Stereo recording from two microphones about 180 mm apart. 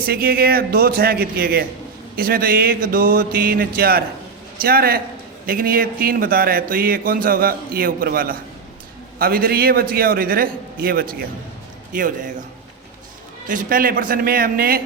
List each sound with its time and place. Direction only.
0.0 s a man's voice: 60° right (ahead or behind)
13.5 s speech: 50° right (ahead or behind)